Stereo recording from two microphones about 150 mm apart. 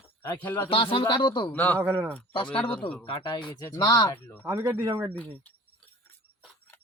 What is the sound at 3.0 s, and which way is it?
A man's voice, 35° left (ahead or behind).